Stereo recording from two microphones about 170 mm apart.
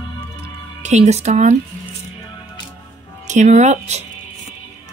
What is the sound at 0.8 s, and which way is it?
Speech, 40° right (ahead or behind).